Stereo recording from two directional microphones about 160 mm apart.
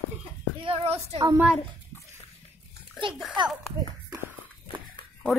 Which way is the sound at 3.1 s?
5° right (ahead or behind).